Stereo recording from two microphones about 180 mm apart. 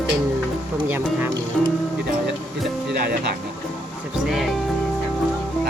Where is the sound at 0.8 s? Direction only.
10° right (ahead or behind).